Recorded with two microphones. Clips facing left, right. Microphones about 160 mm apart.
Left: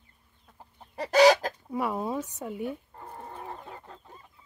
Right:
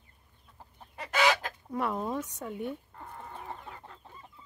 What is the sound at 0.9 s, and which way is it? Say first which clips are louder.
Chicken: left 9 dB; 35° left (ahead or behind).